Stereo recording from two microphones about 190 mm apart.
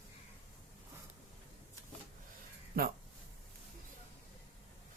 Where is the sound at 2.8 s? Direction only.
50° right (ahead or behind).